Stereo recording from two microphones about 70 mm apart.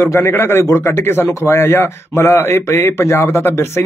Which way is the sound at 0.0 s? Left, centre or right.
Left.